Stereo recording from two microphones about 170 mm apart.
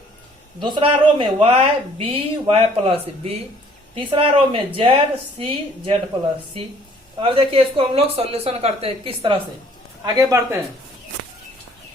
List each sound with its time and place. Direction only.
0.6 s speech: 30° right (ahead or behind)
7.2 s speech: 35° right (ahead or behind)
10.0 s speech: 20° right (ahead or behind)